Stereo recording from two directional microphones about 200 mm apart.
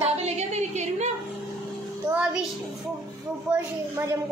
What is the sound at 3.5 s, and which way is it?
Speech, 5° right (ahead or behind).